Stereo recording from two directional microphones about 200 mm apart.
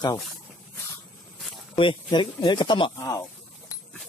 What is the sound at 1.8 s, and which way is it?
Speech, 25° left (ahead or behind).